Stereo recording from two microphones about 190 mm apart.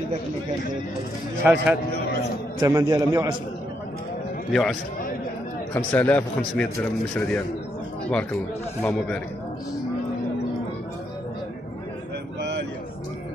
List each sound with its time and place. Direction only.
1.4 s a man's voice: 10° right (ahead or behind)
4.5 s a man's voice: centre (ahead or behind)
5.8 s a man's voice: 10° left (ahead or behind)
8.8 s a man's voice: 5° left (ahead or behind)